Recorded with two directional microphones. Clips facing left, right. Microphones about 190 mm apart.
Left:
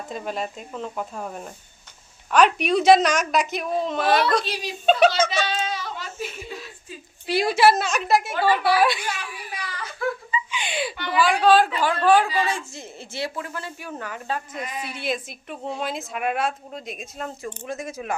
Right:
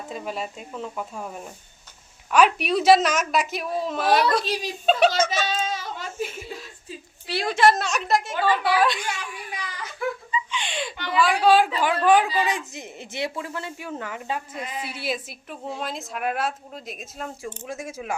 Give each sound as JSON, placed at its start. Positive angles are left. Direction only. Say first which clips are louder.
{"t": 0.1, "sound": "a woman's voice", "louder": "left 2 dB", "side_deg": -5}
{"t": 5.7, "sound": "a sound", "louder": "right 1 dB", "side_deg": -45}
{"t": 7.3, "sound": "a woman's voice", "louder": "left 2 dB", "side_deg": 10}
{"t": 9.6, "sound": "whimper", "louder": "left 2 dB", "side_deg": -20}
{"t": 10.3, "sound": "a sound", "louder": "left 1 dB", "side_deg": 10}
{"t": 11.0, "sound": "a woman's voice", "louder": "even", "side_deg": 5}
{"t": 14.6, "sound": "a man's voice", "louder": "left 1 dB", "side_deg": -25}
{"t": 14.9, "sound": "a woman's voice", "louder": "left 3 dB", "side_deg": -5}